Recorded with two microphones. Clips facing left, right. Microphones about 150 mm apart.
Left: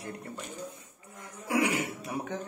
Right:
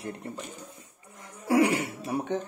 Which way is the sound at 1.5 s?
35° right (ahead or behind).